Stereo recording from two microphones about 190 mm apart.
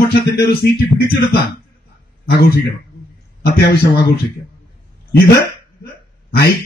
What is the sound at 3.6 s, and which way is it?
Speech, 60° left (ahead or behind).